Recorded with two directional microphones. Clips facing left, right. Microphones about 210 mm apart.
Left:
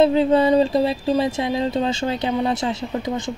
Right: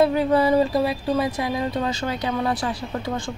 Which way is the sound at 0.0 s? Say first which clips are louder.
Left 3 dB; 25° left (ahead or behind).